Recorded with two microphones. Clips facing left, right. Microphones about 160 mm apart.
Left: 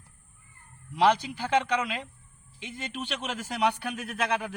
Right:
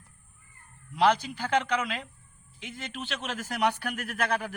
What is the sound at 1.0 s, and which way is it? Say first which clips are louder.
A man's voice: left 1 dB; 10° left (ahead or behind).